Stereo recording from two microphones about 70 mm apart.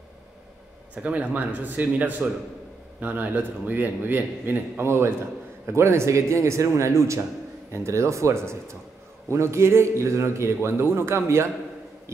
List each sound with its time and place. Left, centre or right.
0.9 s a man's voice: centre; by 11.4 s right